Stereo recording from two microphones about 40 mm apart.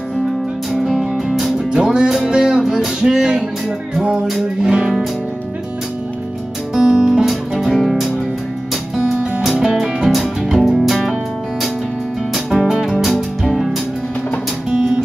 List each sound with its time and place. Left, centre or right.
0.7 s music: centre
1.7 s music: centre
4.6 s music: centre
6.7 s music: centre
7.6 s music: centre
9.4 s music: centre
12.6 s music: centre
13.4 s music: centre